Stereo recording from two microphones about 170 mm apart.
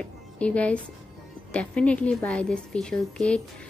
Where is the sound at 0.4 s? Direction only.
5° left (ahead or behind).